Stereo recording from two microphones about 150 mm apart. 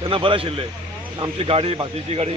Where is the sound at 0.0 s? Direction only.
35° right (ahead or behind).